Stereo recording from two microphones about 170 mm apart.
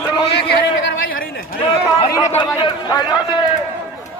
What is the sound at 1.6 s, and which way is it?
A man's voice, 25° left (ahead or behind).